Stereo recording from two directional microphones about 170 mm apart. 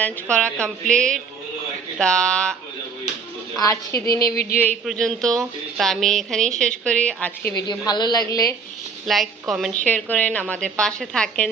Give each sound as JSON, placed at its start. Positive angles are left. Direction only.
{"t": 0.0, "sound": "a woman's voice", "side_deg": 5}
{"t": 3.6, "sound": "a woman's voice", "side_deg": 20}
{"t": 4.9, "sound": "a woman's voice", "side_deg": 5}
{"t": 7.5, "sound": "a woman's voice", "side_deg": 25}
{"t": 9.0, "sound": "a woman's voice", "side_deg": 0}